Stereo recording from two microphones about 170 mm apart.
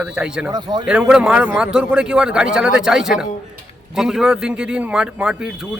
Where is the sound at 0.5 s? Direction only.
25° right (ahead or behind).